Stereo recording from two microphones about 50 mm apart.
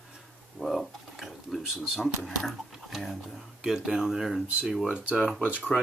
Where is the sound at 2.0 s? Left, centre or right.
Centre.